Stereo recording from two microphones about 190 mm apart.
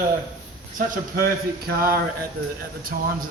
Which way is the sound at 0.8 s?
45° right (ahead or behind).